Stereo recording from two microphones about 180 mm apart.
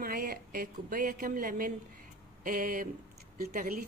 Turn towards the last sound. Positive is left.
turn(degrees=-55)  # may be behind; listen again after turning